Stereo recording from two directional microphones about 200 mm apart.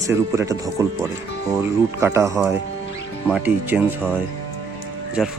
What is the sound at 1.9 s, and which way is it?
Speech, 15° right (ahead or behind).